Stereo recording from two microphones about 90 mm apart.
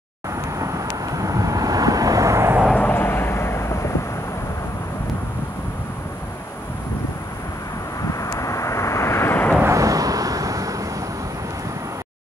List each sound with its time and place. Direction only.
0.6 s vehicle: 35° right (ahead or behind)
2.7 s vehicle: 20° left (ahead or behind)
8.4 s vehicle: 35° left (ahead or behind); by 9.6 s 20° left (ahead or behind)
9.7 s vehicle: 40° right (ahead or behind)